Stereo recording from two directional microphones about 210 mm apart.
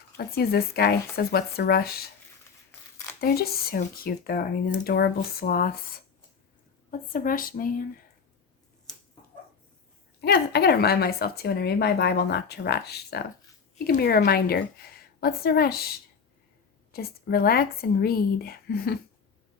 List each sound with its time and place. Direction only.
0.2 s speech: 50° left (ahead or behind)
3.2 s speech: 45° left (ahead or behind)
7.1 s speech: 40° left (ahead or behind)
10.2 s speech: 50° left (ahead or behind)
16.9 s speech: 45° left (ahead or behind)